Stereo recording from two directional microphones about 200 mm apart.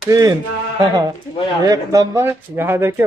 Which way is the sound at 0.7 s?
20° right (ahead or behind).